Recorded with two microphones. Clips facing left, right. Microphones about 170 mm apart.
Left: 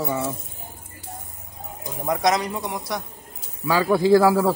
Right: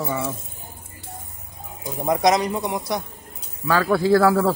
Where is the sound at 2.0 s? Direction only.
20° right (ahead or behind).